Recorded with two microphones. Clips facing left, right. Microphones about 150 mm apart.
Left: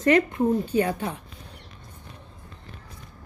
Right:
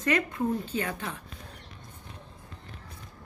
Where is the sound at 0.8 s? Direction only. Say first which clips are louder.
Left 9 dB; 30° left (ahead or behind).